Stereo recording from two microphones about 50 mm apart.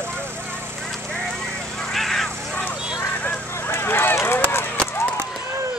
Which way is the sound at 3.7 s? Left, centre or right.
Left.